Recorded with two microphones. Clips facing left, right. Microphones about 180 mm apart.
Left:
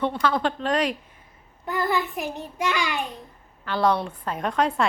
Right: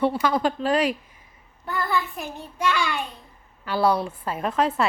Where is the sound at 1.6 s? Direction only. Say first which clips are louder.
Left 1 dB; 20° left (ahead or behind).